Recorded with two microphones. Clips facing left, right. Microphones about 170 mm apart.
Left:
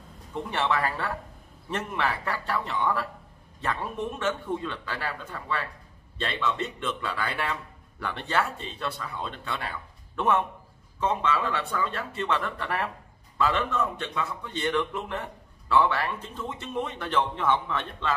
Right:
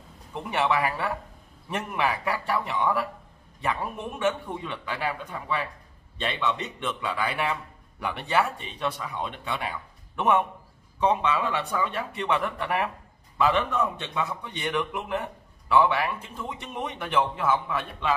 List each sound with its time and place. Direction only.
0.3 s speech: 10° right (ahead or behind)